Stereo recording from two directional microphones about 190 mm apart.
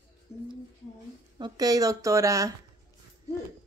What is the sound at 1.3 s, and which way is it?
Speech, 20° right (ahead or behind).